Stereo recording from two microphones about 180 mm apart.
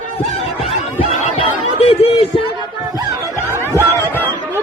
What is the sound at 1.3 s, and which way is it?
Chatter, 35° left (ahead or behind).